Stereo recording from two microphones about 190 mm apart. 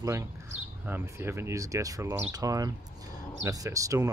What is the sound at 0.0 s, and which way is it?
Speech, 15° right (ahead or behind).